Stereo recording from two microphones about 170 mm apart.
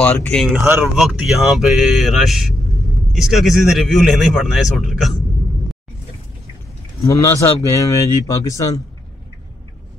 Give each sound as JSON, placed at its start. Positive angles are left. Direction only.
{"t": 0.0, "sound": "a man's voice", "side_deg": 5}
{"t": 7.0, "sound": "speech", "side_deg": 15}